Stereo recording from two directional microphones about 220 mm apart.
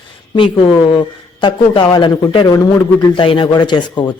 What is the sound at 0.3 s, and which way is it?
Speech, 25° left (ahead or behind).